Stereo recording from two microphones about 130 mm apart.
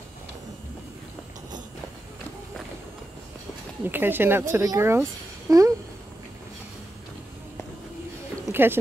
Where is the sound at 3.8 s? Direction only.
15° right (ahead or behind).